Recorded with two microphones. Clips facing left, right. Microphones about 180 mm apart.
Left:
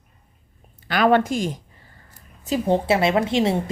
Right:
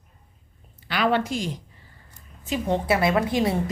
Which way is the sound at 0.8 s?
45° left (ahead or behind).